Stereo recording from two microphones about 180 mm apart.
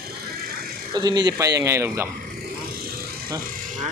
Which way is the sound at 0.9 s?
20° right (ahead or behind).